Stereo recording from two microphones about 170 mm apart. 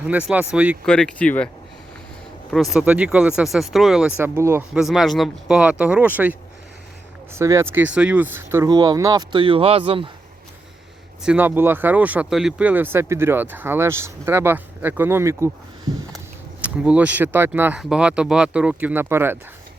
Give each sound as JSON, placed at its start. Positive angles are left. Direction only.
{"t": 0.1, "sound": "speech", "side_deg": -10}
{"t": 0.9, "sound": "speech", "side_deg": 5}
{"t": 2.5, "sound": "speech", "side_deg": 0}
{"t": 4.4, "sound": "speech", "side_deg": -15}
{"t": 4.7, "sound": "speech", "side_deg": 0}
{"t": 7.3, "sound": "speech", "side_deg": -15}
{"t": 11.2, "sound": "speech", "side_deg": -10}